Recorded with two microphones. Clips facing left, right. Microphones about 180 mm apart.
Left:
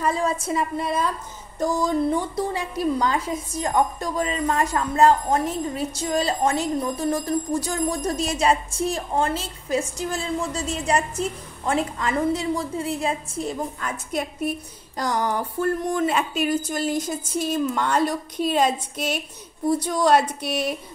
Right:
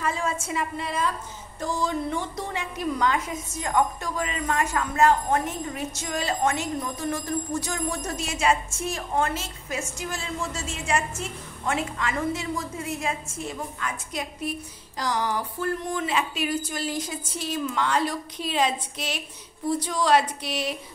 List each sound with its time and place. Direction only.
0.0 s a woman's voice: 35° left (ahead or behind)
2.5 s a woman's voice: 35° left (ahead or behind)